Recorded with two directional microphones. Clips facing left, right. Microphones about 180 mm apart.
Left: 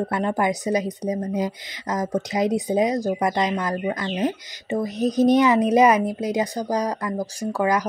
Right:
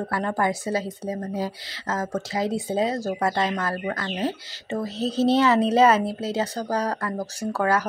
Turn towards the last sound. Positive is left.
turn(degrees=15)  # may be behind; listen again after turning